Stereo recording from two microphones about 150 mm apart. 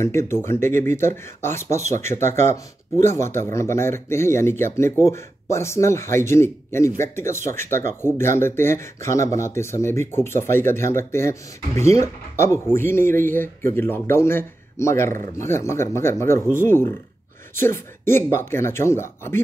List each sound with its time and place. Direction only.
0.0 s speech: 20° left (ahead or behind)